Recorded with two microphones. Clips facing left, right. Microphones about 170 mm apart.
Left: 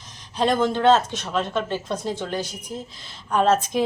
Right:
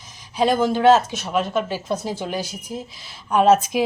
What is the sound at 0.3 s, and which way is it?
Speech, 5° right (ahead or behind).